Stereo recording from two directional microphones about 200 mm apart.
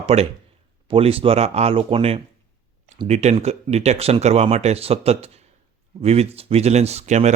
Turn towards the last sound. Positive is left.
turn(degrees=-35)  # may be behind; listen again after turning